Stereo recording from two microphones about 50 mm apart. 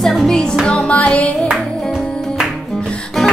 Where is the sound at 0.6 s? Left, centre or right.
Left.